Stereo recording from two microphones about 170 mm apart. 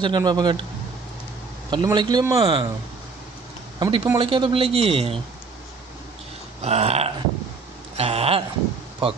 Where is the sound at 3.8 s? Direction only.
20° right (ahead or behind).